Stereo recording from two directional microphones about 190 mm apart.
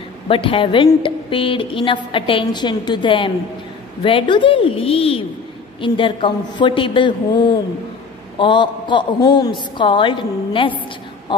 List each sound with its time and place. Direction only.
0.3 s a woman's voice: 30° left (ahead or behind)
8.4 s a woman's voice: 25° left (ahead or behind)